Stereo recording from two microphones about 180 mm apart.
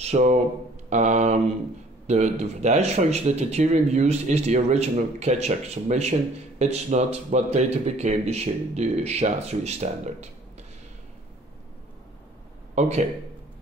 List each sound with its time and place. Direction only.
0.0 s a man's voice: 40° right (ahead or behind)
12.7 s speech: 40° right (ahead or behind)